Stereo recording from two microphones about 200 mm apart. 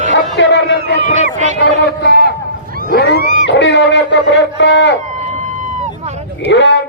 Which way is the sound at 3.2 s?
50° right (ahead or behind).